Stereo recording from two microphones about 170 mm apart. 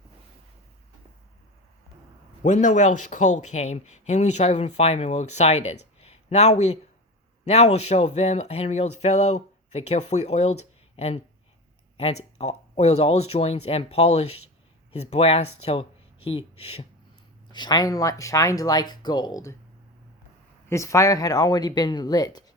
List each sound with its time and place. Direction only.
2.4 s speech: 45° left (ahead or behind)
17.5 s speech: 25° left (ahead or behind)
20.7 s speech: 15° left (ahead or behind)